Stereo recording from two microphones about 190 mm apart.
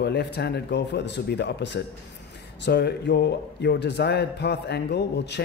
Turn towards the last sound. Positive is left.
turn(degrees=60)  # may be behind; listen again after turning